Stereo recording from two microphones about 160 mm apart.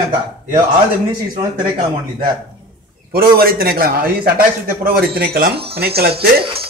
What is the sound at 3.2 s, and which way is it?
A man's voice, 65° right (ahead or behind).